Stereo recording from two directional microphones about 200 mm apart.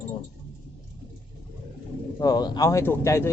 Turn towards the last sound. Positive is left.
turn(degrees=15)  # may be behind; listen again after turning